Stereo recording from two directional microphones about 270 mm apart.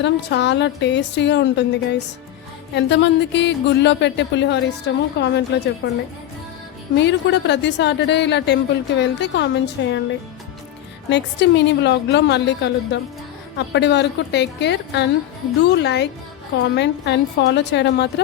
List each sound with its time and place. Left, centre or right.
0.0 s speech: left
6.9 s speech: left
11.1 s speech: left